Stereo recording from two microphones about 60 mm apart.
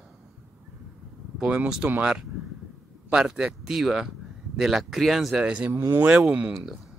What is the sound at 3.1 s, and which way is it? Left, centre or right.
Speech, centre.